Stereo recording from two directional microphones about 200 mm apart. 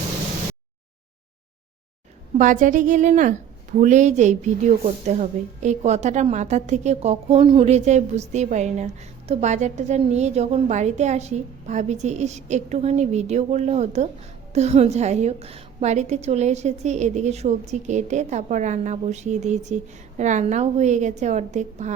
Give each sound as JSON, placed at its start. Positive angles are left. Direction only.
{"t": 2.4, "sound": "a woman's voice", "side_deg": -40}